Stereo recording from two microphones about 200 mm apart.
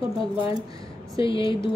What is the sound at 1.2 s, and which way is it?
Speech, 25° left (ahead or behind).